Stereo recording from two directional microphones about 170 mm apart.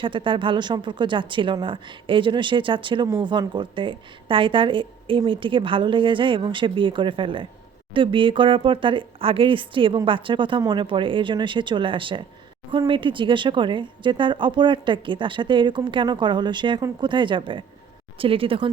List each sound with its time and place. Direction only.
0.0 s speech: 30° right (ahead or behind)